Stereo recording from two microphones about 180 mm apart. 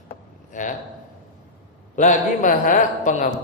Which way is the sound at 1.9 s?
45° left (ahead or behind).